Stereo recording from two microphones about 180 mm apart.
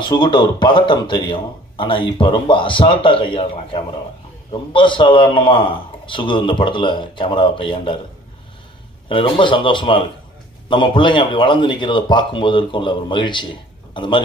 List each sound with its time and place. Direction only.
0.0 s a man's voice: 25° left (ahead or behind)
9.1 s a man's voice: 30° left (ahead or behind)